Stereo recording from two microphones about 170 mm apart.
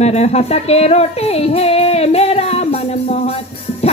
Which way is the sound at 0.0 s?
40° left (ahead or behind).